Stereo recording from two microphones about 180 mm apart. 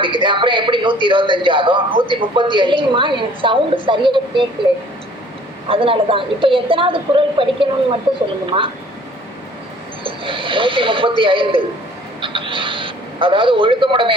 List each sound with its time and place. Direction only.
0.0 s a man's voice: 25° right (ahead or behind)
5.6 s a man's voice: 30° right (ahead or behind)
10.0 s speech: 30° right (ahead or behind)